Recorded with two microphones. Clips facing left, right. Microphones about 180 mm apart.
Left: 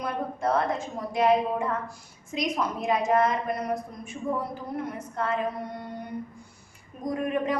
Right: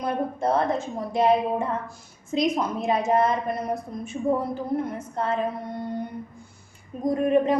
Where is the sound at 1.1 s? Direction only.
25° right (ahead or behind).